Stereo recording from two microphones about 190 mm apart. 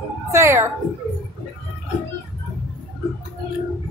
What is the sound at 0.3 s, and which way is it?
Speech, 15° right (ahead or behind).